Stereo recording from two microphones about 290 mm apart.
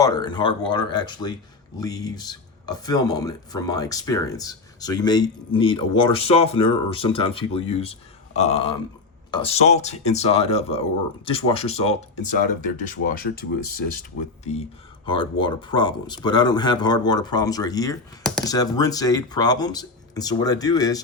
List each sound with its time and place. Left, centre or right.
0.0 s speech: centre; by 14.0 s left
15.0 s speech: centre